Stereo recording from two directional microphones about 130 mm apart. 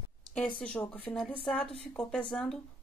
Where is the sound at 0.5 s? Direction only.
10° left (ahead or behind).